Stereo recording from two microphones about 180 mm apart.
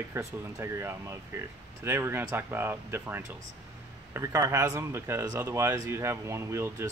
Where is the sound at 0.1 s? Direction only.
15° right (ahead or behind).